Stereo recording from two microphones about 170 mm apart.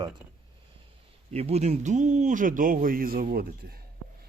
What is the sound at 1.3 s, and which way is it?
Speech, 40° right (ahead or behind).